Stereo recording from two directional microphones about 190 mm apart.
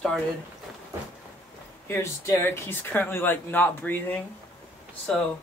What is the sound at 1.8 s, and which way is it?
Speech, 15° left (ahead or behind).